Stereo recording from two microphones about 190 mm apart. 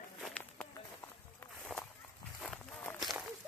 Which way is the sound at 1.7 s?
Centre (ahead or behind).